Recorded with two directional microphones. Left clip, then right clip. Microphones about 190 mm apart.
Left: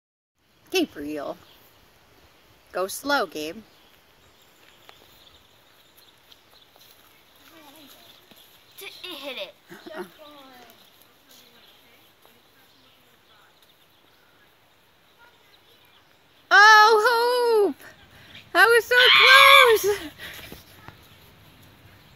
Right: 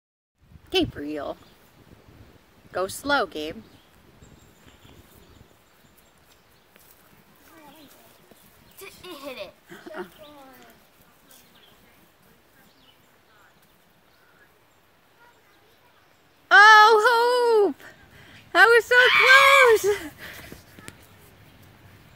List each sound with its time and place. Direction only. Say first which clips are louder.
0.7 s speech: right 1 dB; 5° left (ahead or behind)
2.7 s speech: even; 5° left (ahead or behind)
8.7 s a sound: left 4 dB; 10° left (ahead or behind)
16.4 s a sound: right 1 dB; 5° left (ahead or behind)
18.9 s speech: left 3 dB; 15° right (ahead or behind)
19.7 s speech: right 1 dB; centre (ahead or behind)